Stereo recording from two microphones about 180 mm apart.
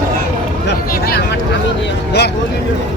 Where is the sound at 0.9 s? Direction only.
60° left (ahead or behind).